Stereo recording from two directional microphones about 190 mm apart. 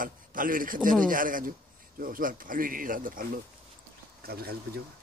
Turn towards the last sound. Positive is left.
turn(degrees=-55)  # may be behind; listen again after turning